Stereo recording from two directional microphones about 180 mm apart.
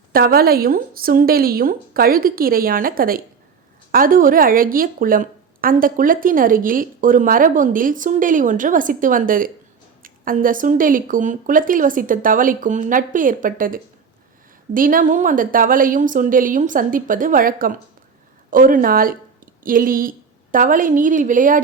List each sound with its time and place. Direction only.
0.1 s speech: 55° right (ahead or behind)